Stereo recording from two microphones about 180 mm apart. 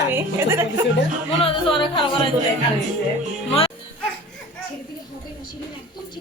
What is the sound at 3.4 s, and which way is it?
Speech, 30° left (ahead or behind).